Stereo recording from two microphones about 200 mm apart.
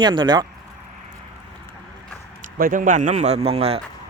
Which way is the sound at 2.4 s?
45° right (ahead or behind).